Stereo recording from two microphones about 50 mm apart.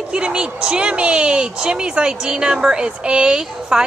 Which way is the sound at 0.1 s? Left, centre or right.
Centre.